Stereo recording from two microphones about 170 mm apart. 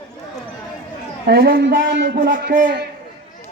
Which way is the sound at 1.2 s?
65° right (ahead or behind).